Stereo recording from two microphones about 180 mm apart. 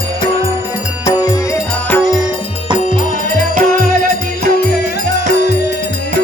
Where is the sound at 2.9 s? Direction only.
45° left (ahead or behind).